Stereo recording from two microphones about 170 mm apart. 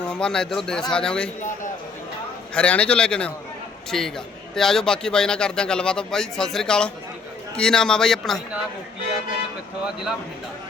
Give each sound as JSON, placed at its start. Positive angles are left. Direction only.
{"t": 0.1, "sound": "speech", "side_deg": 5}
{"t": 1.4, "sound": "a sound", "side_deg": 50}
{"t": 2.6, "sound": "a man's voice", "side_deg": 5}
{"t": 9.8, "sound": "speech", "side_deg": -5}